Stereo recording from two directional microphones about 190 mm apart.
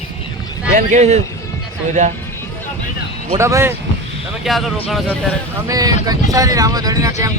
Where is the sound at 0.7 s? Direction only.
45° right (ahead or behind).